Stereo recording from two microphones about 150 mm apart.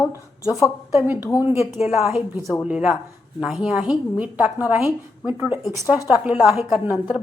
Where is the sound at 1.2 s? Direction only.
25° left (ahead or behind).